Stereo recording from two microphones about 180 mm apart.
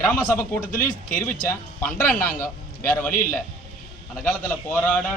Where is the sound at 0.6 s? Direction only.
50° left (ahead or behind).